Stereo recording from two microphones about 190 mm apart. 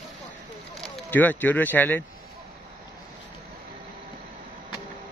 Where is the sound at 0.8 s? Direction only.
5° left (ahead or behind).